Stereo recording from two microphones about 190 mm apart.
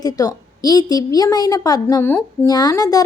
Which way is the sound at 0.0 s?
20° left (ahead or behind).